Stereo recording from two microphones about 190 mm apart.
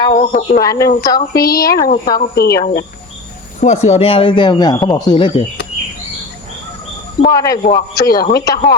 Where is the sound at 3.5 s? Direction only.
35° left (ahead or behind).